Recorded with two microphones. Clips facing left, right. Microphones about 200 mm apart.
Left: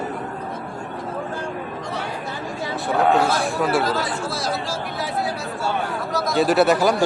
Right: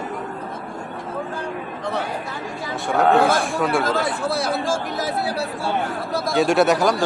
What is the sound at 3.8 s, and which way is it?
Speech, 50° right (ahead or behind).